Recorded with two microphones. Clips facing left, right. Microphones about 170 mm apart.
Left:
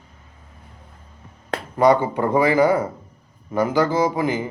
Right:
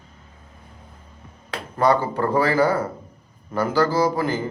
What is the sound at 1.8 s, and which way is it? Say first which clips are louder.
Speech: left 3 dB; 20° left (ahead or behind).